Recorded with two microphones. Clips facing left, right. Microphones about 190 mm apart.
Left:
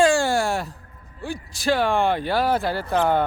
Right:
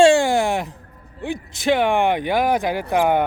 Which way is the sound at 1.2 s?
20° right (ahead or behind).